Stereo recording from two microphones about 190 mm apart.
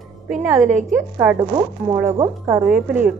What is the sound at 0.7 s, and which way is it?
Speech, 40° right (ahead or behind).